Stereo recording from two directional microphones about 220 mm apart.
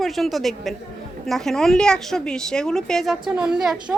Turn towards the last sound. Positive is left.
turn(degrees=0)  # may be behind; listen again after turning